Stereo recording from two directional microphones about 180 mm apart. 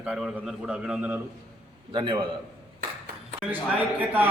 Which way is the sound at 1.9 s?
25° right (ahead or behind).